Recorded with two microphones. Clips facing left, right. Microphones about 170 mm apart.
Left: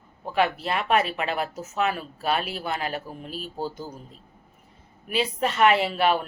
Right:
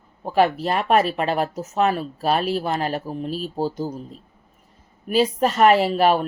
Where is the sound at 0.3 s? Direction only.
40° right (ahead or behind).